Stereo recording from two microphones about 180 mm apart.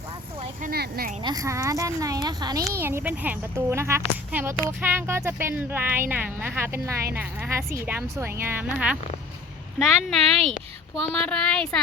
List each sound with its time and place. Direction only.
0.6 s speech: 60° right (ahead or behind)
1.2 s speech: 20° right (ahead or behind); by 11.8 s 5° left (ahead or behind)